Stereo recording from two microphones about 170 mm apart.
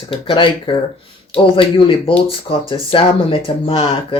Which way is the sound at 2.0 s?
30° left (ahead or behind).